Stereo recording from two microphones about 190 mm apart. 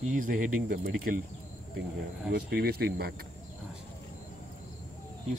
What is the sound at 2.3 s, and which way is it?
Speech, 55° right (ahead or behind).